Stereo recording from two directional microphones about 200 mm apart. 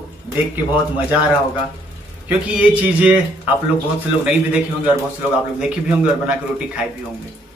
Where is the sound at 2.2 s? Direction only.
10° right (ahead or behind).